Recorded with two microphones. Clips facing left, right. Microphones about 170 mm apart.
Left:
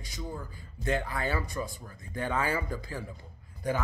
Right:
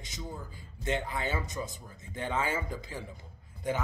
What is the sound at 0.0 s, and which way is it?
Speech, 20° right (ahead or behind).